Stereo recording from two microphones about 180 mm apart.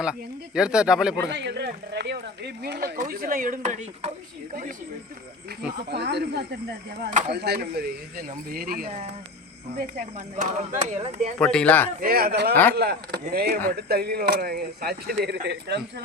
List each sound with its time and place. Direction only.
0.0 s speech: 5° right (ahead or behind)
1.3 s speech: 70° right (ahead or behind); by 4.1 s 40° right (ahead or behind)
5.7 s speech: 65° right (ahead or behind); by 11.3 s 40° right (ahead or behind)
11.3 s speech: 5° left (ahead or behind)
11.9 s speech: 55° right (ahead or behind)